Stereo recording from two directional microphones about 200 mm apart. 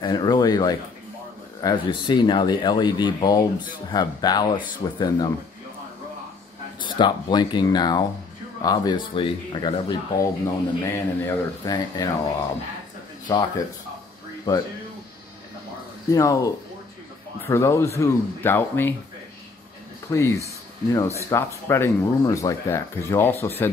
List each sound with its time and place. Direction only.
0.0 s speech: 20° left (ahead or behind)
6.8 s speech: 25° left (ahead or behind)
13.3 s speech: 20° left (ahead or behind)
14.5 s speech: 20° left (ahead or behind)
16.1 s speech: 15° left (ahead or behind)
20.1 s speech: 15° left (ahead or behind)